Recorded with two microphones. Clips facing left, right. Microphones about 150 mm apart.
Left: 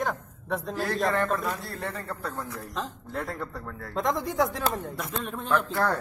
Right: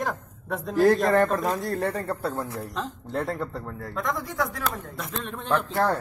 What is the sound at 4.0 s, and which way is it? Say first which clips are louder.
Speech: left 3 dB; 25° left (ahead or behind).